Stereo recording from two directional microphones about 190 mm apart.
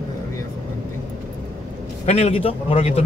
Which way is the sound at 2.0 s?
35° left (ahead or behind).